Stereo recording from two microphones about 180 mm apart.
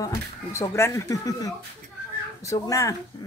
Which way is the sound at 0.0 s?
15° left (ahead or behind).